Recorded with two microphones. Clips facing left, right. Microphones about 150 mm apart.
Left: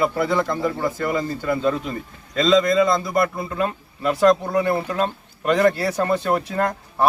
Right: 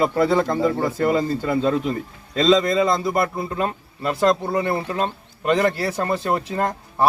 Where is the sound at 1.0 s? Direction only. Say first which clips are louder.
Right 4 dB; 30° right (ahead or behind).